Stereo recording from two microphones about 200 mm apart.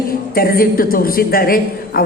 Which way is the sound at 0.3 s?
45° left (ahead or behind).